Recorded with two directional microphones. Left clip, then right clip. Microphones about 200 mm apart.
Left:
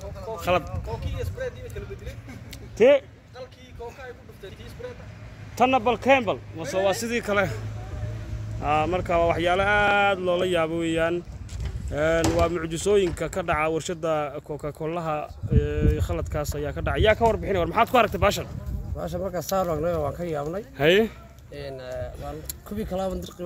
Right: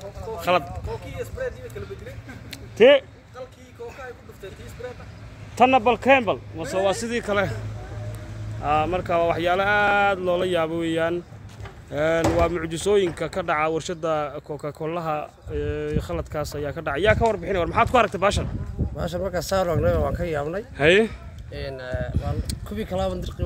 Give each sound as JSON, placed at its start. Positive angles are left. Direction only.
{"t": 0.4, "sound": "speech", "side_deg": 0}
{"t": 0.8, "sound": "speech", "side_deg": -40}
{"t": 2.5, "sound": "a sound", "side_deg": -15}
{"t": 5.6, "sound": "speech", "side_deg": -15}
{"t": 8.6, "sound": "speech", "side_deg": 5}